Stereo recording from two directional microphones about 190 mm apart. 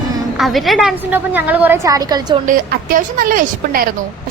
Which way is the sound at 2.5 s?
45° right (ahead or behind).